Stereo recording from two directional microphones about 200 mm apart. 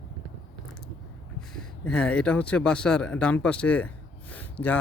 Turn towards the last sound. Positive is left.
turn(degrees=10)  # may be behind; listen again after turning